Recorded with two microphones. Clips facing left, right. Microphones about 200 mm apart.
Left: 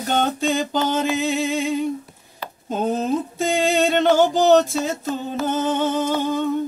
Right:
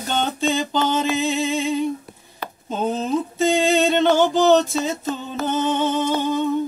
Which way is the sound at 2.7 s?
10° left (ahead or behind).